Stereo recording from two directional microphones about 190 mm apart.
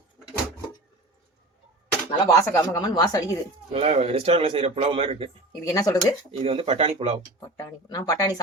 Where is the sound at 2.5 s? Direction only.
20° left (ahead or behind).